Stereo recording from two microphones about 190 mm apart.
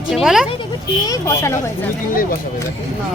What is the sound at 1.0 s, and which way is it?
Speech, 15° left (ahead or behind).